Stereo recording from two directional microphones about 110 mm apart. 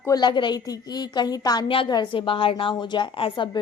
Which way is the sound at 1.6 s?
55° left (ahead or behind).